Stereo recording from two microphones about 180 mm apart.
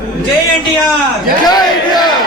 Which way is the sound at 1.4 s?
20° left (ahead or behind).